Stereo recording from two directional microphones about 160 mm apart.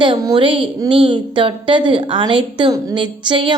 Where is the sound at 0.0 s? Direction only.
25° right (ahead or behind).